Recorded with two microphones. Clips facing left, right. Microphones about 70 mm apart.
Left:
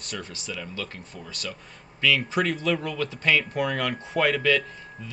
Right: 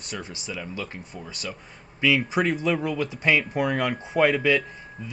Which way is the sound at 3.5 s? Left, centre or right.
Centre.